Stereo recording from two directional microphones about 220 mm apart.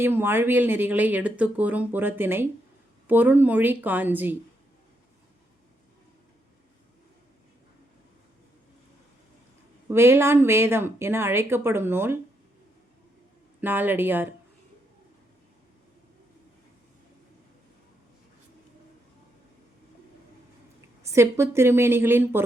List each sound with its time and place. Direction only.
0.0 s speech: 10° right (ahead or behind)
9.9 s speech: 10° right (ahead or behind)
13.6 s speech: 10° right (ahead or behind)
21.0 s speech: 15° right (ahead or behind)